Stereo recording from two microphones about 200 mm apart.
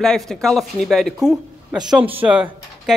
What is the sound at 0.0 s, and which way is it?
Speech, 5° left (ahead or behind).